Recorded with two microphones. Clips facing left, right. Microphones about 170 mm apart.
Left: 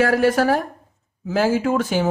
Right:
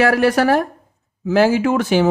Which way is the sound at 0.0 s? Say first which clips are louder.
Right 2 dB; 75° right (ahead or behind).